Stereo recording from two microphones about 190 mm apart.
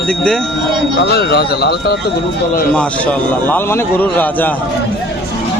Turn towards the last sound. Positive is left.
turn(degrees=10)  # may be behind; listen again after turning